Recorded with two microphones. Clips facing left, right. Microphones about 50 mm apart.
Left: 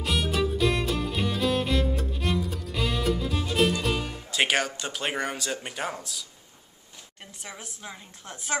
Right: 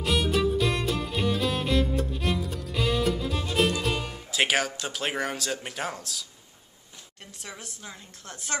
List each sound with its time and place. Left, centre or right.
0.0 s music: centre
7.4 s a woman's voice: centre